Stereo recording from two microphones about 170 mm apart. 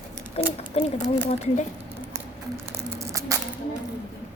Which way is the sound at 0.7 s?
35° left (ahead or behind).